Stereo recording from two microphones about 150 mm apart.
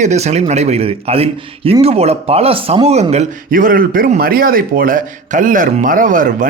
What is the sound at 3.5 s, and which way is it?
Speech, 70° right (ahead or behind).